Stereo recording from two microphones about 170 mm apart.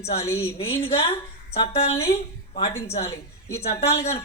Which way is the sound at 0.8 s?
35° left (ahead or behind).